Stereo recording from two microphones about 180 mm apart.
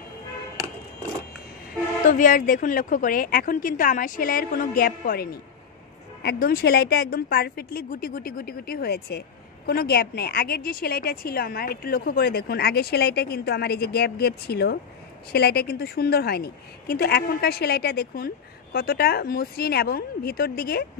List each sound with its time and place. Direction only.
2.0 s a woman's voice: 45° left (ahead or behind)